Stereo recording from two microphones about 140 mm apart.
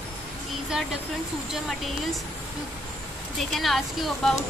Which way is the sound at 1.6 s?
Centre (ahead or behind).